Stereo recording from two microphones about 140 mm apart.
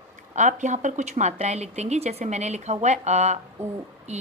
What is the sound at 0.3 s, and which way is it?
A woman's voice, 60° right (ahead or behind).